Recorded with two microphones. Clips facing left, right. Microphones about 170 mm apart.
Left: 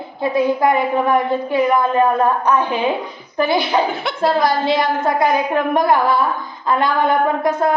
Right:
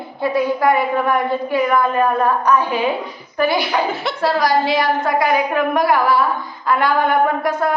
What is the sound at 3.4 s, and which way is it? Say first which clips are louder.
A woman's voice: left 1 dB; 20° left (ahead or behind).